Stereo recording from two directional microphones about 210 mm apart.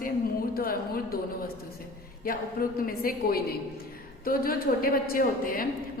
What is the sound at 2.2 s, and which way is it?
A woman's voice, 45° left (ahead or behind).